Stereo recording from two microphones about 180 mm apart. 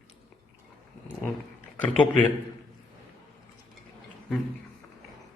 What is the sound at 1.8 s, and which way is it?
Speech, 30° left (ahead or behind).